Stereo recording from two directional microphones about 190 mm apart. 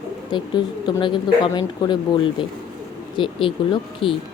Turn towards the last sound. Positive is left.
turn(degrees=25)  # may be behind; listen again after turning